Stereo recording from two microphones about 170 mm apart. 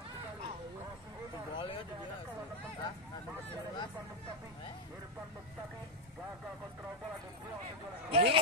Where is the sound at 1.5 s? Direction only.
30° left (ahead or behind).